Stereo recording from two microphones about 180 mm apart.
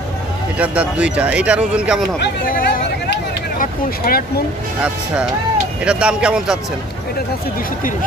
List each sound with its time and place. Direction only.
0.6 s speech: 5° right (ahead or behind)
2.1 s speech: 60° left (ahead or behind)
5.9 s speech: 5° right (ahead or behind)